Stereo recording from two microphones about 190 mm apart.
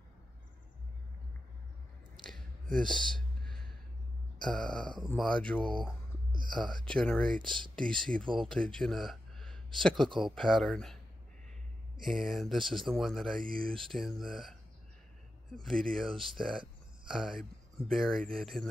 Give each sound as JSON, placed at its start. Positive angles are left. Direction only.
{"t": 2.7, "sound": "a sound", "side_deg": 5}
{"t": 4.4, "sound": "speech", "side_deg": 5}
{"t": 7.4, "sound": "speech", "side_deg": -25}
{"t": 7.7, "sound": "speech", "side_deg": 5}
{"t": 12.0, "sound": "speech", "side_deg": 0}